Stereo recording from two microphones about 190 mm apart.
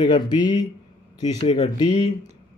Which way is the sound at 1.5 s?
35° left (ahead or behind).